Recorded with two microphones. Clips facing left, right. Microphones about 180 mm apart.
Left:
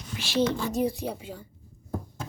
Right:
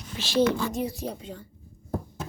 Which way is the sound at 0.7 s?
35° left (ahead or behind).